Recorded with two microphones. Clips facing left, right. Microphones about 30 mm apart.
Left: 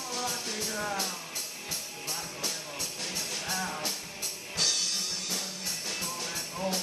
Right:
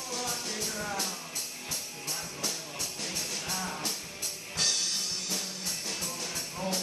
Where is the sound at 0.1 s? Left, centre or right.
Centre.